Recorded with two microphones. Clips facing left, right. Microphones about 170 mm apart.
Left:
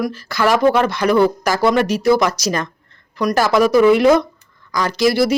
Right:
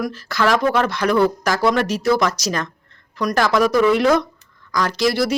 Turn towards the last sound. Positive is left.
turn(degrees=0)  # may be behind; listen again after turning